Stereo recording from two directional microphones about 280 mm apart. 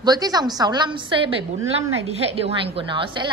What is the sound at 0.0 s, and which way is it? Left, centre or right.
A woman's voice, centre.